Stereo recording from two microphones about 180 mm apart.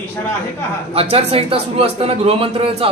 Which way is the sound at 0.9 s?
35° right (ahead or behind).